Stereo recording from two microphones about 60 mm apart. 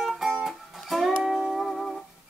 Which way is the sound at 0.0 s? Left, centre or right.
Centre.